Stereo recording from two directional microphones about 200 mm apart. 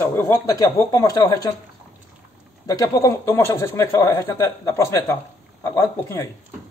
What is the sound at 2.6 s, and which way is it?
Speech, 15° left (ahead or behind).